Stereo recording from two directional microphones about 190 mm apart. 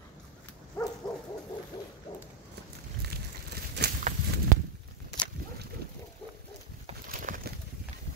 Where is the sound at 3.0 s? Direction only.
55° right (ahead or behind).